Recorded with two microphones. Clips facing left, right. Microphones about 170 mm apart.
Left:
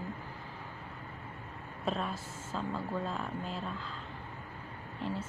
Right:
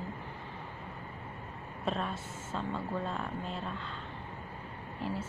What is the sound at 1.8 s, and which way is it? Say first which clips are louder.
Speech: even; centre (ahead or behind).